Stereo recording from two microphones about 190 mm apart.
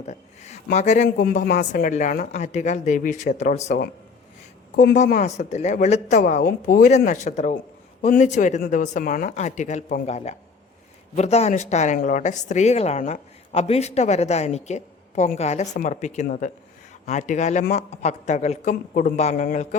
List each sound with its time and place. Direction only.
0.0 s speech: 35° left (ahead or behind)
5.0 s speech: 50° left (ahead or behind)
5.4 s speech: 40° left (ahead or behind)